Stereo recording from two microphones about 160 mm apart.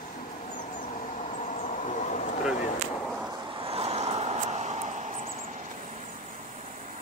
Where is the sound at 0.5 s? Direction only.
50° left (ahead or behind).